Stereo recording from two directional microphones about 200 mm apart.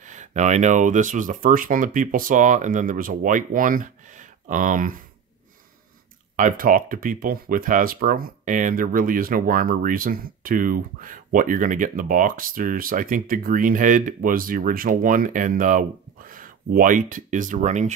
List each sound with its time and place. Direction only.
0.0 s speech: 40° right (ahead or behind)
6.3 s speech: 45° right (ahead or behind)